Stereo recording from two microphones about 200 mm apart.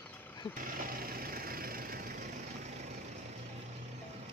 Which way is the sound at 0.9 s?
45° right (ahead or behind).